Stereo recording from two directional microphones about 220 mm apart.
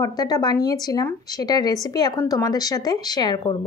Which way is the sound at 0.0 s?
20° left (ahead or behind).